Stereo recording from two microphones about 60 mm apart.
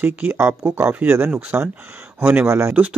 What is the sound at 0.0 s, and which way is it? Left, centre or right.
Speech, right.